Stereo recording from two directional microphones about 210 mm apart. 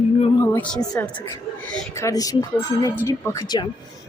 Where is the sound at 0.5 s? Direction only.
5° left (ahead or behind).